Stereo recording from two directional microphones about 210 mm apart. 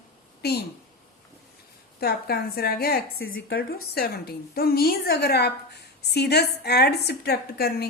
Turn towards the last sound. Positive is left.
turn(degrees=50)  # may be behind; listen again after turning